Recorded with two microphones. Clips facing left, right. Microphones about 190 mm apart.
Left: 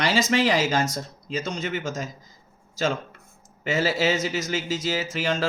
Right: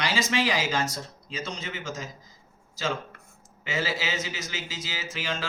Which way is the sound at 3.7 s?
45° left (ahead or behind).